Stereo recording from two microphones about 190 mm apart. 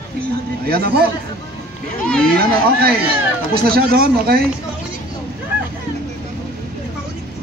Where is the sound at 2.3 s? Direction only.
55° right (ahead or behind).